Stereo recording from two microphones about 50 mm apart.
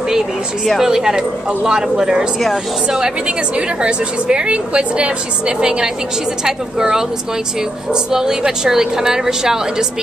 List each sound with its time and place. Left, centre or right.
0.8 s speech: centre
3.3 s a woman's voice: right